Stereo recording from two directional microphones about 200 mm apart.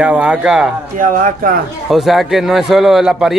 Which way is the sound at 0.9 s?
45° right (ahead or behind).